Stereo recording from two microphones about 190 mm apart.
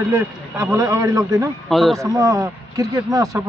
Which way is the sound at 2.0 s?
15° right (ahead or behind).